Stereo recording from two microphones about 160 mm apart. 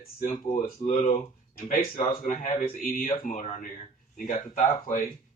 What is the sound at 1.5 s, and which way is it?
Speech, 60° left (ahead or behind).